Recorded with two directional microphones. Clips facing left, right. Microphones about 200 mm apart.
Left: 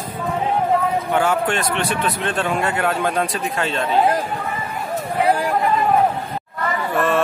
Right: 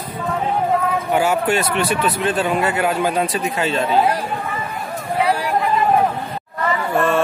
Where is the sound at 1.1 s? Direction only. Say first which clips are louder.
Right 3 dB; 10° right (ahead or behind).